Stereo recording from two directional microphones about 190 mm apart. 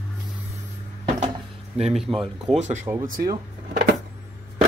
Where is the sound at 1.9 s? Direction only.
Centre (ahead or behind).